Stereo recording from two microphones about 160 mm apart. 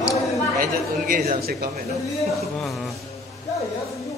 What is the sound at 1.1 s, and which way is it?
Speech, 70° right (ahead or behind).